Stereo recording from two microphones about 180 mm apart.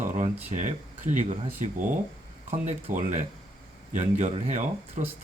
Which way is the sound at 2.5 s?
45° right (ahead or behind).